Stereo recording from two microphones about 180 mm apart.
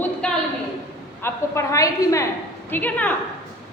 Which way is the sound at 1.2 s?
15° left (ahead or behind).